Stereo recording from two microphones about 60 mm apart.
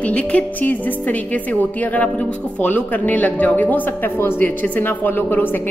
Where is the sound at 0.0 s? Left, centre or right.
Left.